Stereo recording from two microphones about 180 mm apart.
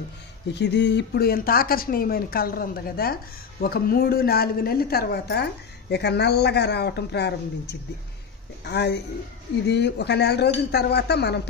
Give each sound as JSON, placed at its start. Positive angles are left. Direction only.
{"t": 0.5, "sound": "a woman's voice", "side_deg": 70}